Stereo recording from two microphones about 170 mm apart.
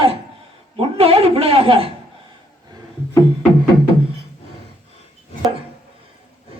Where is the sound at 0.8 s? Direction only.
35° right (ahead or behind).